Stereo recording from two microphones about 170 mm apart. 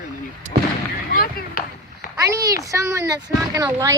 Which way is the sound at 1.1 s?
60° left (ahead or behind).